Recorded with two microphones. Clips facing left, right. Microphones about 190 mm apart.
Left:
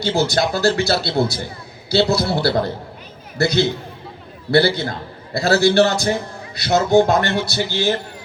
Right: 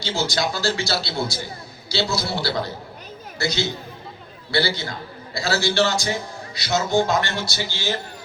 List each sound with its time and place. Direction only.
0.0 s a man's voice: 60° left (ahead or behind)